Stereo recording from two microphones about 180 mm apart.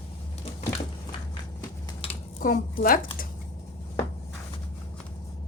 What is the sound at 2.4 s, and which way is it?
Speech, 50° left (ahead or behind).